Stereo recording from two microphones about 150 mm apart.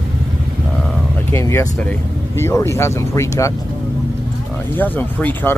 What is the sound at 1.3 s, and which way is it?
Speech, 20° left (ahead or behind).